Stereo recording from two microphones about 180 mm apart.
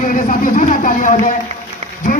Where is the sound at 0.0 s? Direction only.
50° left (ahead or behind).